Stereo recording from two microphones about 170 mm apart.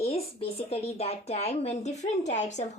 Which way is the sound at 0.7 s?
35° left (ahead or behind).